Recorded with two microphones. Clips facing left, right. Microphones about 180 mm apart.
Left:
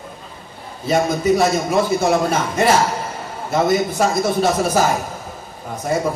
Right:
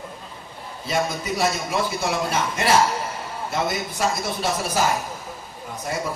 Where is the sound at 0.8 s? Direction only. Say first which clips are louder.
Left 8 dB; 50° left (ahead or behind).